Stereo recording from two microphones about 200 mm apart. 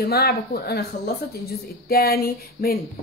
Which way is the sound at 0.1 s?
50° left (ahead or behind).